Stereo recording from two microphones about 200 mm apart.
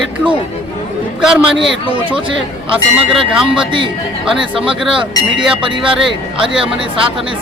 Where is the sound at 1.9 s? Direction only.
25° right (ahead or behind).